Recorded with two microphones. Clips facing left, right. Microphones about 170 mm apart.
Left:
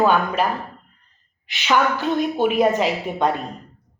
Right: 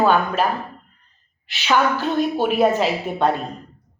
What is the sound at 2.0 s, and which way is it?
Speech, 15° left (ahead or behind).